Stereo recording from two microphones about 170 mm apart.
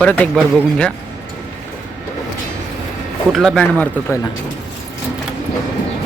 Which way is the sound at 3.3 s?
Centre (ahead or behind).